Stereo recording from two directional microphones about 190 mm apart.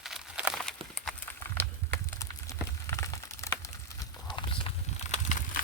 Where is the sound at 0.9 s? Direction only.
5° left (ahead or behind).